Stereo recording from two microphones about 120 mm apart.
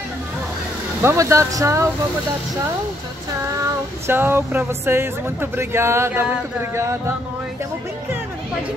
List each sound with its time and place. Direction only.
1.0 s speech: 25° right (ahead or behind)
4.1 s speech: 20° right (ahead or behind)